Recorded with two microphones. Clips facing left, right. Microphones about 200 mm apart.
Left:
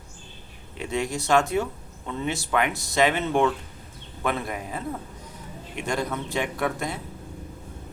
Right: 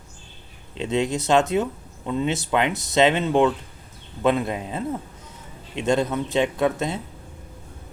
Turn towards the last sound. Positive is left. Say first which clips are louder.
# right 5 dB
turn(degrees=-20)  # may be behind; listen again after turning